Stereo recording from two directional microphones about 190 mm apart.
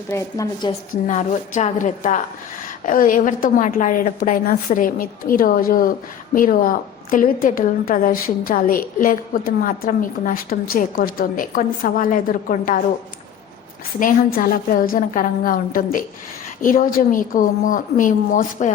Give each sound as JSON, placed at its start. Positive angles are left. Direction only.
{"t": 0.1, "sound": "a woman's voice", "side_deg": 15}
{"t": 1.0, "sound": "a woman's voice", "side_deg": 40}
{"t": 14.0, "sound": "a woman's voice", "side_deg": 50}